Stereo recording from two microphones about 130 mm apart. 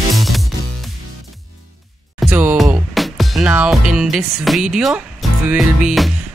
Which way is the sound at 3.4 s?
10° right (ahead or behind).